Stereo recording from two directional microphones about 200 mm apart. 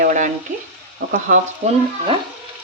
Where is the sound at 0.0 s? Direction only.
40° right (ahead or behind).